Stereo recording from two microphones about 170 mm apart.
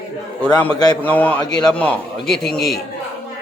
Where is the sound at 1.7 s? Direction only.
5° left (ahead or behind).